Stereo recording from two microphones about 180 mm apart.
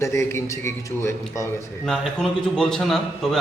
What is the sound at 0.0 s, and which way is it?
Speech, 15° left (ahead or behind).